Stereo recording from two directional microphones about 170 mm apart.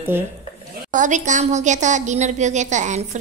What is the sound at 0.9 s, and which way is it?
A woman's voice, 45° right (ahead or behind).